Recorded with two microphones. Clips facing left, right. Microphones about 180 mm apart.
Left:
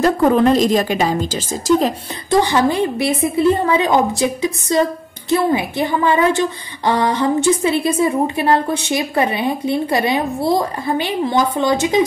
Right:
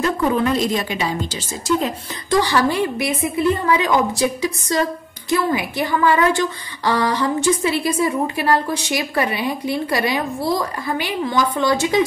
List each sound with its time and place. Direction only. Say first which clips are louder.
0.0 s a woman's voice: left 6 dB; 40° left (ahead or behind)
2.4 s a woman's voice: left 2 dB; 20° left (ahead or behind)